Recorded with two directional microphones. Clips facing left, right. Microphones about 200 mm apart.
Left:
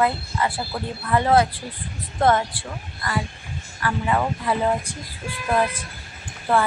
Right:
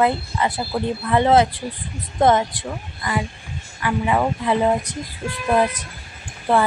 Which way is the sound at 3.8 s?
15° right (ahead or behind).